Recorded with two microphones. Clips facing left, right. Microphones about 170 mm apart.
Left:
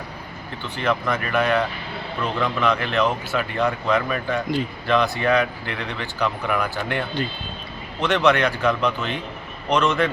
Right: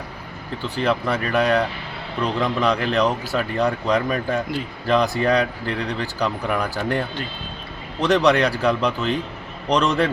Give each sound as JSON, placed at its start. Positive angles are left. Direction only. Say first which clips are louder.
{"t": 0.8, "sound": "speech", "louder": "right 1 dB", "side_deg": -35}
{"t": 8.0, "sound": "speech", "louder": "right 2 dB", "side_deg": -35}